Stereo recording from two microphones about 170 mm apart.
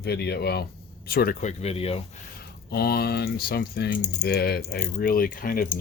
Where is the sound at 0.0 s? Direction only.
70° left (ahead or behind).